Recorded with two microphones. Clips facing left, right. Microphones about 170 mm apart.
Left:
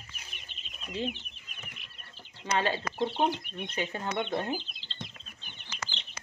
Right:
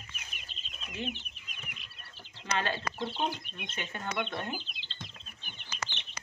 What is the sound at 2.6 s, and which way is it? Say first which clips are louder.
Speech: left 5 dB; 30° left (ahead or behind).